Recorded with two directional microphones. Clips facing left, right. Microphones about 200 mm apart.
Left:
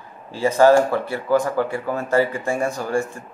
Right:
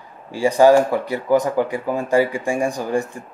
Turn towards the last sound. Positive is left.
turn(degrees=-15)  # may be behind; listen again after turning